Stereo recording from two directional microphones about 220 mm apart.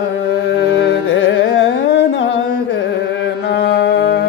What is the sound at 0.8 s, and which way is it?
Carnatic music, 55° left (ahead or behind).